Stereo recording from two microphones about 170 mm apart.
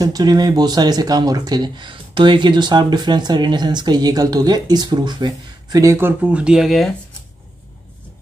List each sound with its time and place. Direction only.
0.0 s speech: 25° right (ahead or behind); by 6.9 s centre (ahead or behind)